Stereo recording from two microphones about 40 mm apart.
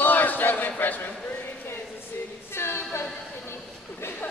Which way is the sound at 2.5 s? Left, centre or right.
Left.